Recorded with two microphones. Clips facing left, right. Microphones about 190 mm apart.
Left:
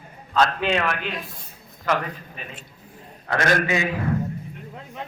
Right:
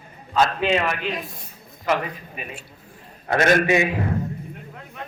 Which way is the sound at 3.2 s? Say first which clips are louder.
Right 4 dB; 20° right (ahead or behind).